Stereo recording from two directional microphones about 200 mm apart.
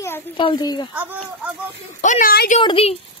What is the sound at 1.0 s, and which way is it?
Speech, 10° right (ahead or behind).